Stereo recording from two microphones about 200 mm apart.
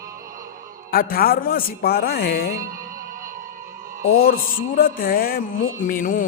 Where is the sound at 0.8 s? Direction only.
45° left (ahead or behind).